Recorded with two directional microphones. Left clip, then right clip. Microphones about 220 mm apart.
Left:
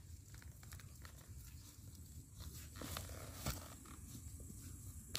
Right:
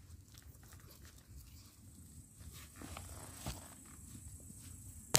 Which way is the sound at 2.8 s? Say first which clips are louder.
Left 2 dB; 40° left (ahead or behind).